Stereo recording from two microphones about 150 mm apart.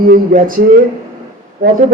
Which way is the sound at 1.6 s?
75° right (ahead or behind).